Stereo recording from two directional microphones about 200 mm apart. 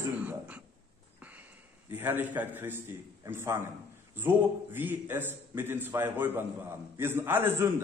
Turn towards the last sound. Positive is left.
turn(degrees=-10)  # may be behind; listen again after turning